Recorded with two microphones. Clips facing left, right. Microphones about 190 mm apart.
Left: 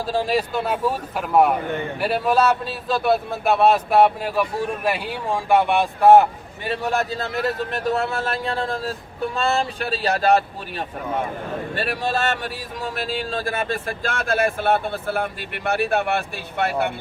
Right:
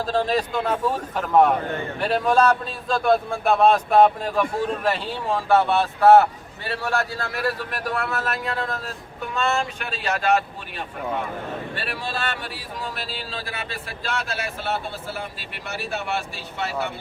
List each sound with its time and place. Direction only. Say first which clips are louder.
0.0 s a man's voice: left 1 dB; 10° left (ahead or behind); by 16.9 s 55° left (ahead or behind)